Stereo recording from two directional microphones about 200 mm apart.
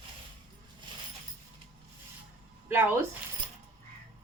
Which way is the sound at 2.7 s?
10° right (ahead or behind).